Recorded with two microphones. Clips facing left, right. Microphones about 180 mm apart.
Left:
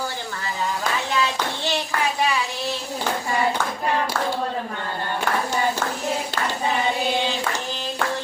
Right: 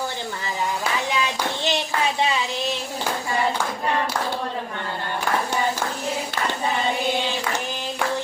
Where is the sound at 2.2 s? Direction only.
20° right (ahead or behind).